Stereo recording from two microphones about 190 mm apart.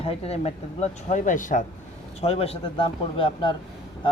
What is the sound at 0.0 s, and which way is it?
Speech, 30° left (ahead or behind).